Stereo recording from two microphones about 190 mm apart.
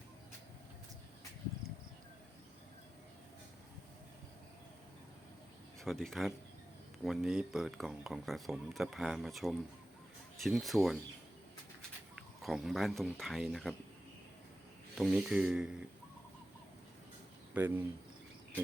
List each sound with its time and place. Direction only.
5.8 s speech: centre (ahead or behind)
12.4 s speech: centre (ahead or behind)
14.9 s speech: 5° right (ahead or behind)
17.5 s speech: 10° right (ahead or behind)